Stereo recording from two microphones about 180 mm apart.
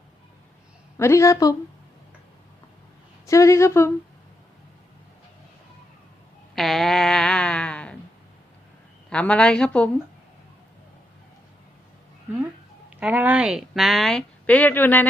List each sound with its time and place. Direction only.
0.9 s a woman's voice: 15° left (ahead or behind)
3.2 s a woman's voice: 15° left (ahead or behind)
6.6 s a sound: centre (ahead or behind)
9.0 s speech: 5° left (ahead or behind)
13.0 s speech: 10° right (ahead or behind); by 15.0 s 10° left (ahead or behind)